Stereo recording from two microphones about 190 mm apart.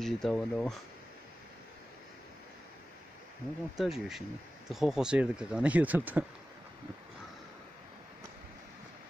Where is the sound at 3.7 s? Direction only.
Centre (ahead or behind).